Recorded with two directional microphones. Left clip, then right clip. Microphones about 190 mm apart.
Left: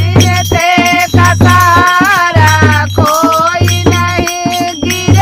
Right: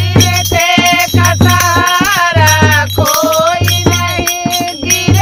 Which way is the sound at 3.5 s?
35° left (ahead or behind).